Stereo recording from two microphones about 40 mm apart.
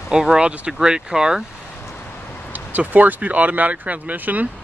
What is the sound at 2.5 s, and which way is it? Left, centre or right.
Speech, right.